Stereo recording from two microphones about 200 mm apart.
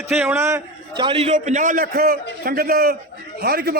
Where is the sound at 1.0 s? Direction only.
30° right (ahead or behind).